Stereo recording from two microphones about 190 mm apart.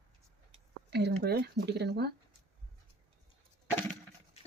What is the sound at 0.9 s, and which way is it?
Speech, 60° right (ahead or behind).